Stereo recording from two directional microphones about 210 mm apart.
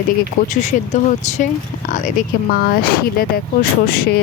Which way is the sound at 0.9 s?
35° left (ahead or behind).